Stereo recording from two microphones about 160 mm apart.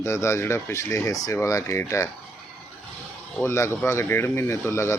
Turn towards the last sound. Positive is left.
turn(degrees=15)  # may be behind; listen again after turning